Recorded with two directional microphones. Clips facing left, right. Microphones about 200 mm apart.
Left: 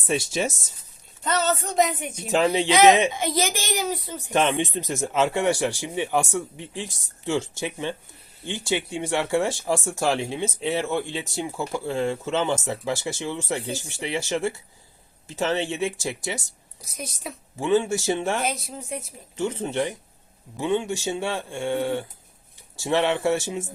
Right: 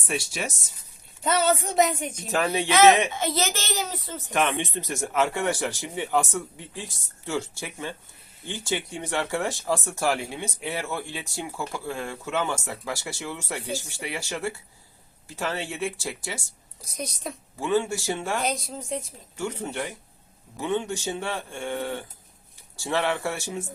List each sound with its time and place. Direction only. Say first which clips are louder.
0.1 s speech: left 6 dB; 25° left (ahead or behind)
1.2 s a woman's voice: right 1 dB; 10° right (ahead or behind); by 4.3 s 15° left (ahead or behind)
4.3 s a woman's voice: left 3 dB; 25° left (ahead or behind)
17.2 s a woman's voice: left 1 dB; 5° left (ahead or behind)
17.6 s speech: left 3 dB; 20° left (ahead or behind)
18.4 s a woman's voice: even; 5° left (ahead or behind)
19.4 s a woman's voice: left 5 dB; 20° left (ahead or behind)